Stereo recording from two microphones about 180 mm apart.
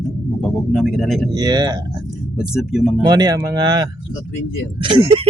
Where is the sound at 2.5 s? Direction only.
Centre (ahead or behind).